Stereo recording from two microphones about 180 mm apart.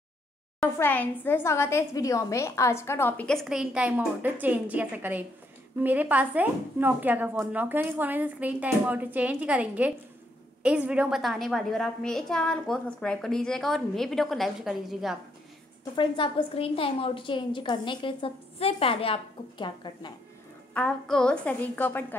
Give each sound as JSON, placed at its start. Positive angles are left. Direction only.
{"t": 0.7, "sound": "a woman's voice", "side_deg": 10}
{"t": 15.8, "sound": "a woman's voice", "side_deg": 25}
{"t": 20.7, "sound": "a woman's voice", "side_deg": 5}